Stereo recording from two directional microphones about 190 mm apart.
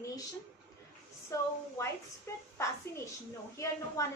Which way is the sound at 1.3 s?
15° left (ahead or behind).